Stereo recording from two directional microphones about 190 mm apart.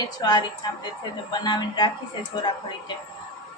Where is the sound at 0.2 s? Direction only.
20° left (ahead or behind).